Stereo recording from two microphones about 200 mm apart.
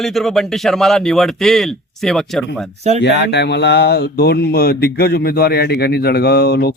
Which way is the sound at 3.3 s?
60° left (ahead or behind).